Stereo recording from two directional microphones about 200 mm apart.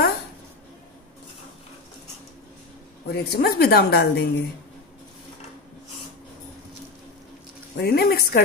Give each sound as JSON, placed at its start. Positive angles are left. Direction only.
{"t": 3.1, "sound": "a woman's voice", "side_deg": 50}
{"t": 7.7, "sound": "a woman's voice", "side_deg": 50}